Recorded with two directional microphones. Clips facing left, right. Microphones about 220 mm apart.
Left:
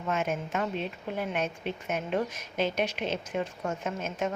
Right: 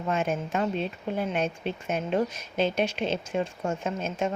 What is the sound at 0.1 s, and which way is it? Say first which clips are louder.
A woman's voice: right 2 dB; 30° right (ahead or behind).